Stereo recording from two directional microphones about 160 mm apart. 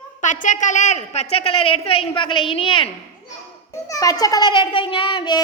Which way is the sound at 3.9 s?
20° left (ahead or behind).